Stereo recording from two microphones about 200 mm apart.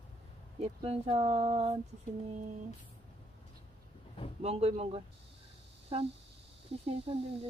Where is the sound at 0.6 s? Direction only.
30° right (ahead or behind).